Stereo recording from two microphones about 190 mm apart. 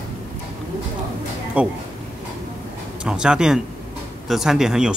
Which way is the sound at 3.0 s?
5° right (ahead or behind).